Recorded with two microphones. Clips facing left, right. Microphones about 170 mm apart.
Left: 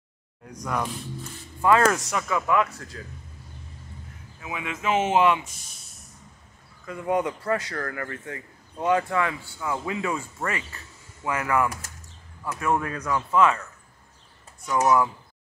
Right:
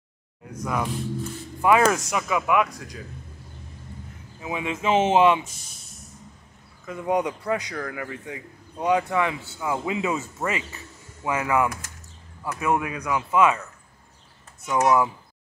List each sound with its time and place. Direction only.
0.5 s speech: 5° right (ahead or behind)
1.6 s a man's voice: 15° right (ahead or behind)
4.4 s speech: 25° right (ahead or behind)
6.9 s a man's voice: 20° right (ahead or behind)
14.7 s a man's voice: 20° right (ahead or behind)